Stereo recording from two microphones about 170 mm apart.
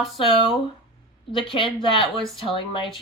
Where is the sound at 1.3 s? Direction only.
30° left (ahead or behind).